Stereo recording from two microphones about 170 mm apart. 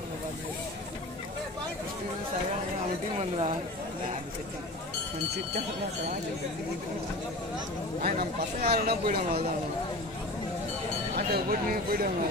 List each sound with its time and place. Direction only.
3.2 s speech: 35° right (ahead or behind)
8.0 s speech: 60° right (ahead or behind)
11.1 s speech: 60° right (ahead or behind)